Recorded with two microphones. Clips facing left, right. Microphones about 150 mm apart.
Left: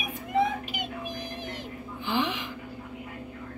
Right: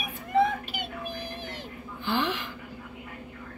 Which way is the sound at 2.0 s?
5° left (ahead or behind).